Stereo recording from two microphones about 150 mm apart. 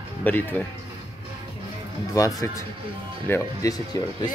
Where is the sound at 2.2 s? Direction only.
20° left (ahead or behind).